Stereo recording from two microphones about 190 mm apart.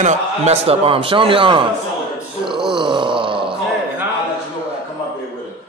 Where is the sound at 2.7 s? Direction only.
25° right (ahead or behind).